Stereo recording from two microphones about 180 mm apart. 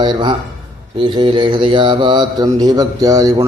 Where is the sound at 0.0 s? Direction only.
25° right (ahead or behind).